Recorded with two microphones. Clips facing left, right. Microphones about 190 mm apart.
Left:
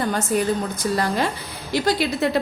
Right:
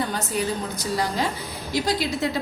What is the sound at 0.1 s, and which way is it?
A woman's voice, 50° left (ahead or behind).